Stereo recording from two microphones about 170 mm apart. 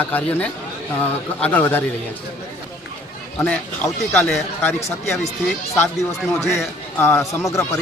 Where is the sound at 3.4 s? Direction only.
10° left (ahead or behind).